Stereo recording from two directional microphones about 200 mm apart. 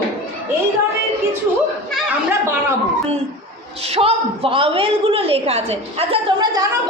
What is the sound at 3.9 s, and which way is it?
A woman's voice, 30° right (ahead or behind).